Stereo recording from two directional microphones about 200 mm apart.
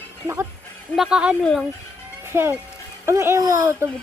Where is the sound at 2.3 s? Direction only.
10° right (ahead or behind).